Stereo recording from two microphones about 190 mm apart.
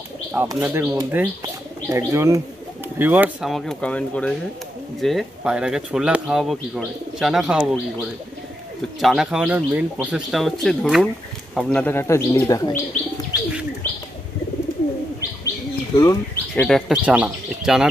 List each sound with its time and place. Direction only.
0.3 s speech: 10° right (ahead or behind); by 12.8 s 15° left (ahead or behind)
13.8 s bird: 10° left (ahead or behind)
16.0 s speech: 15° left (ahead or behind)
16.6 s speech: centre (ahead or behind)